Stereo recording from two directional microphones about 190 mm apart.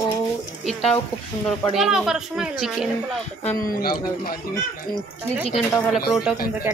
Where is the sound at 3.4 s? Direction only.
50° left (ahead or behind).